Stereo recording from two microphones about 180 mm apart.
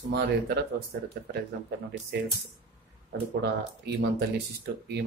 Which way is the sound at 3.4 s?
70° right (ahead or behind).